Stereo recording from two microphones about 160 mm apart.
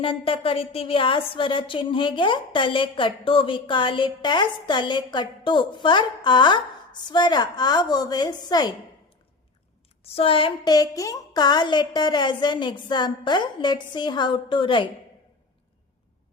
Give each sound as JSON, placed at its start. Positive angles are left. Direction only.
{"t": 0.0, "sound": "a woman's voice", "side_deg": 35}
{"t": 10.0, "sound": "a woman's voice", "side_deg": 40}